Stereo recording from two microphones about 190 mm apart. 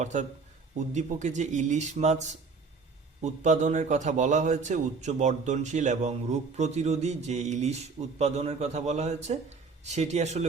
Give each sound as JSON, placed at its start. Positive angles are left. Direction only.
{"t": 0.0, "sound": "a man's voice", "side_deg": -40}